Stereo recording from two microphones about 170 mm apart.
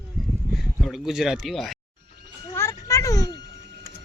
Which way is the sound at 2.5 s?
15° left (ahead or behind).